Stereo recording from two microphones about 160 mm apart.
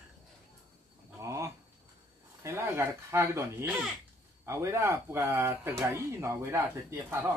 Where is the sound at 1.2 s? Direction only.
20° right (ahead or behind).